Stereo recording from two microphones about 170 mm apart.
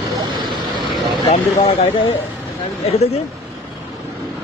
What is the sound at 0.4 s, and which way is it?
Vehicle, 25° right (ahead or behind).